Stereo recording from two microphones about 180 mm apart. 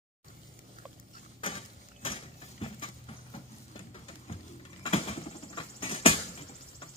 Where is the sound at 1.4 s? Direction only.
30° left (ahead or behind).